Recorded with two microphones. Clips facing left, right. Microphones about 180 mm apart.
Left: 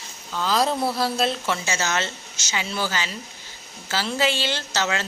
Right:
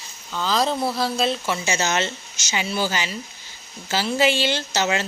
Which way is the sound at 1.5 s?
20° right (ahead or behind).